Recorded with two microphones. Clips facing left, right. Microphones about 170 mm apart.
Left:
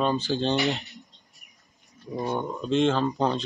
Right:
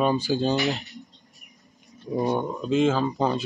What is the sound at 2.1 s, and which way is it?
Speech, 15° right (ahead or behind).